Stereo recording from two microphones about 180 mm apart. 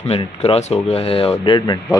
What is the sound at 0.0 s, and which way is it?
Speech, 35° left (ahead or behind).